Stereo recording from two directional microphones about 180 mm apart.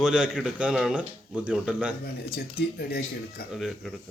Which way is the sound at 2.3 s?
60° left (ahead or behind).